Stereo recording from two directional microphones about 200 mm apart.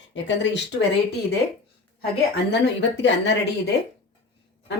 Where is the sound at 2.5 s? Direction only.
60° left (ahead or behind).